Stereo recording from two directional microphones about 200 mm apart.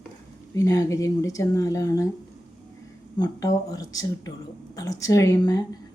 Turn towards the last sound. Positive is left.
turn(degrees=20)  # may be behind; listen again after turning